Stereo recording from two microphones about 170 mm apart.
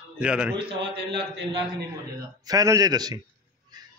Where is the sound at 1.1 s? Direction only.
90° right.